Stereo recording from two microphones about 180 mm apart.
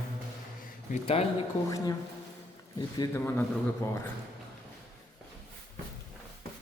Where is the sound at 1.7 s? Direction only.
20° left (ahead or behind).